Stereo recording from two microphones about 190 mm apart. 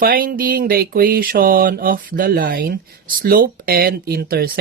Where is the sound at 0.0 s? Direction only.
50° right (ahead or behind).